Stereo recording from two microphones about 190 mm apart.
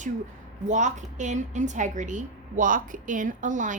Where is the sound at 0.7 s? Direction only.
40° right (ahead or behind).